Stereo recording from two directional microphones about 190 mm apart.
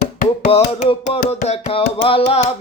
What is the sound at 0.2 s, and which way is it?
Music, 40° left (ahead or behind).